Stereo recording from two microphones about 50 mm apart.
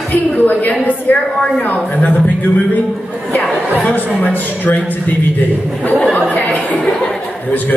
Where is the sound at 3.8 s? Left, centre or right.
Left.